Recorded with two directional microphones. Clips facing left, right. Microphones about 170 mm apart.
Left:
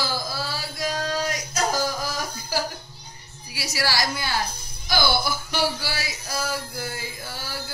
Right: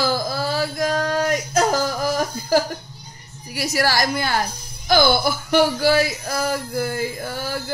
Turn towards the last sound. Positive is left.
turn(degrees=-50)  # may be behind; listen again after turning